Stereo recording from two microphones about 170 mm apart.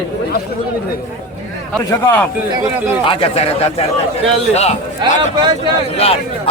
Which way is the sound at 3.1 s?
35° left (ahead or behind).